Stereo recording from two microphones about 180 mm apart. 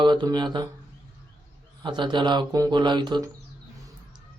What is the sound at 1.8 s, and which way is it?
Speech, 25° right (ahead or behind).